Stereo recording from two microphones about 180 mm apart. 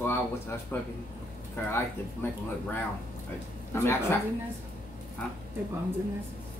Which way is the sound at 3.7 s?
15° left (ahead or behind).